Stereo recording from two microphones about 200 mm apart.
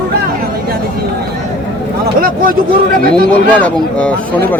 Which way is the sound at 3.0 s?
50° right (ahead or behind).